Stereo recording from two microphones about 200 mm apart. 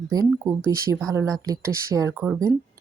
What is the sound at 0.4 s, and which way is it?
Speech, 15° right (ahead or behind).